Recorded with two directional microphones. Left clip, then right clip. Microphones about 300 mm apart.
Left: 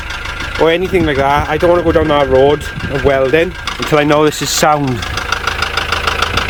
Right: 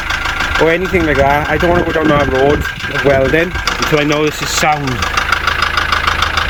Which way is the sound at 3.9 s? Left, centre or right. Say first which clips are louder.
Left 6 dB; centre.